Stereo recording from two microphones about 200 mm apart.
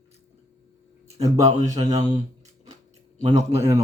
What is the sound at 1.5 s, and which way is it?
Speech, 20° right (ahead or behind).